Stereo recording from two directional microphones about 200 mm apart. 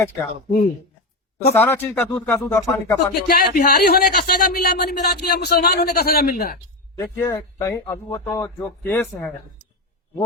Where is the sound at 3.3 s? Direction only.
50° left (ahead or behind).